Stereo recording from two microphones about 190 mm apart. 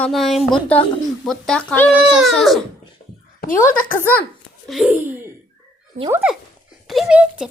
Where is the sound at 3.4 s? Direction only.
45° left (ahead or behind).